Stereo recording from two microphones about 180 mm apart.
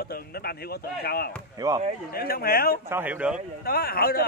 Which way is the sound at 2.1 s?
55° left (ahead or behind).